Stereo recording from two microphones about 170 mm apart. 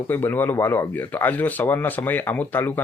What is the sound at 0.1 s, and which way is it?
Speech, 10° left (ahead or behind).